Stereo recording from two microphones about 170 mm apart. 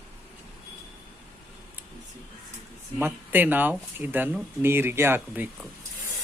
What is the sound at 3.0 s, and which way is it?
Speech, 10° right (ahead or behind).